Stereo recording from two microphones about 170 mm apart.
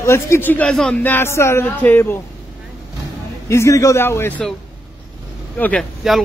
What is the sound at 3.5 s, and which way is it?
Speech, 15° left (ahead or behind).